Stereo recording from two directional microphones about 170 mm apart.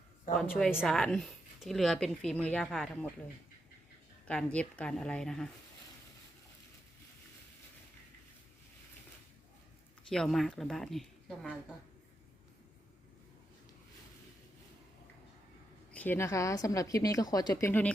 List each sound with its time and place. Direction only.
0.3 s a woman's voice: centre (ahead or behind)
4.3 s a woman's voice: 5° left (ahead or behind)
10.1 s a woman's voice: centre (ahead or behind)
15.9 s a woman's voice: 10° left (ahead or behind)